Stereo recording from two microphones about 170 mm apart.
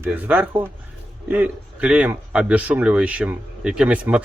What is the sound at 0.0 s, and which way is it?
A man's voice, 10° right (ahead or behind).